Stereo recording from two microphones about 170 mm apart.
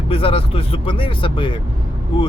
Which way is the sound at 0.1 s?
35° left (ahead or behind).